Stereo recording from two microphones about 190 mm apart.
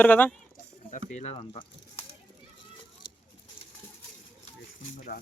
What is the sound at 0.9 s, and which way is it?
Speech, 35° left (ahead or behind).